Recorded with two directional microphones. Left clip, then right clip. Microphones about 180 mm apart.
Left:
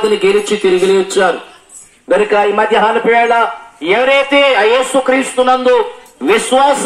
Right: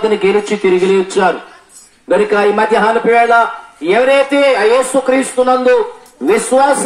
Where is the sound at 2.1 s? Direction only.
65° right (ahead or behind).